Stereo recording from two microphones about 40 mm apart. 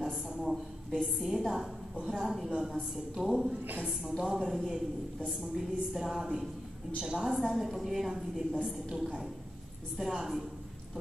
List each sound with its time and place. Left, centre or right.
1.0 s a woman's voice: centre
7.3 s a woman's voice: centre
8.5 s a woman's voice: centre
9.9 s a woman's voice: centre